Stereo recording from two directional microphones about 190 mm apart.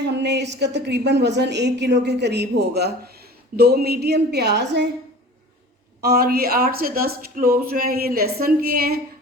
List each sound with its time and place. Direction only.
0.0 s a woman's voice: 65° right (ahead or behind)
6.0 s a woman's voice: 55° right (ahead or behind)